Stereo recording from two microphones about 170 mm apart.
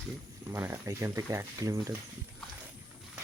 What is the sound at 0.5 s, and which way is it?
Speech, 15° right (ahead or behind).